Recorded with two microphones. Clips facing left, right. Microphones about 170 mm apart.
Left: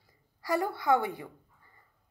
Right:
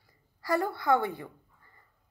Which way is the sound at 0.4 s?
15° left (ahead or behind).